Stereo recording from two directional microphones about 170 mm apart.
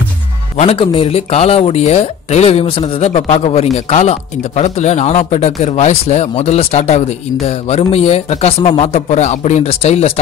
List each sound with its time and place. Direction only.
0.6 s speech: 35° left (ahead or behind)